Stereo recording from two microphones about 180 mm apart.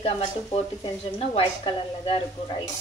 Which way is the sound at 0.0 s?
25° left (ahead or behind).